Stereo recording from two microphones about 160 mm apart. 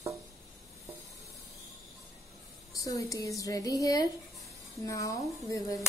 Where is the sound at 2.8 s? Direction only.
20° left (ahead or behind).